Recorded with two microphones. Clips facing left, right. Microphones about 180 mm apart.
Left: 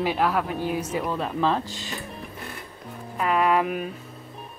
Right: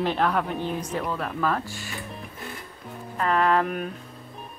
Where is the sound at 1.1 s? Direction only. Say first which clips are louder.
Left 4 dB; 20° left (ahead or behind).